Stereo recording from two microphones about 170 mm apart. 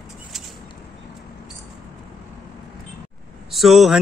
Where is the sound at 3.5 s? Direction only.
Centre (ahead or behind).